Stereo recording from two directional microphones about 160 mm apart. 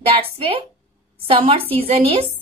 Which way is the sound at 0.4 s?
35° right (ahead or behind).